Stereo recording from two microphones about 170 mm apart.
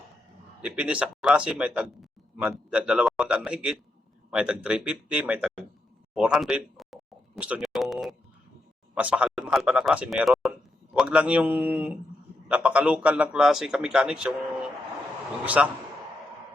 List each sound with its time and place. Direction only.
0.6 s a man's voice: 5° right (ahead or behind)
6.1 s a sound: 5° right (ahead or behind)
9.0 s a man's voice: 5° right (ahead or behind)
15.4 s a man's voice: 5° right (ahead or behind)